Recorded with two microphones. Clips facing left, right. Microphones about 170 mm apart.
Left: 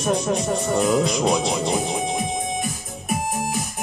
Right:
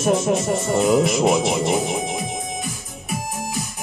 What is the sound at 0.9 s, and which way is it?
Speech, 20° right (ahead or behind).